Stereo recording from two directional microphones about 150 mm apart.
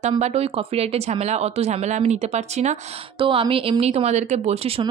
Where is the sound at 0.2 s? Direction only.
45° right (ahead or behind).